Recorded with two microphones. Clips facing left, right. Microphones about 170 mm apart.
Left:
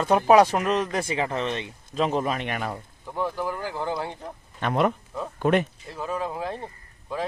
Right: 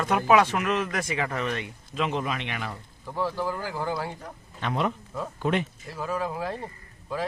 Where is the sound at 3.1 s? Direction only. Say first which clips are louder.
Even; 15° left (ahead or behind).